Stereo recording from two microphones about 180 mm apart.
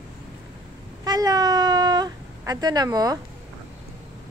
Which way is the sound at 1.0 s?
20° right (ahead or behind).